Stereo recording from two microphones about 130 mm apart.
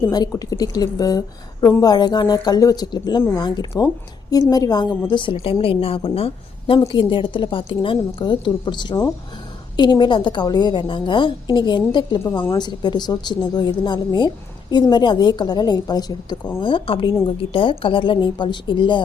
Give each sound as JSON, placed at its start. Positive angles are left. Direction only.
{"t": 0.1, "sound": "a woman's voice", "side_deg": 30}
{"t": 5.1, "sound": "a woman's voice", "side_deg": 40}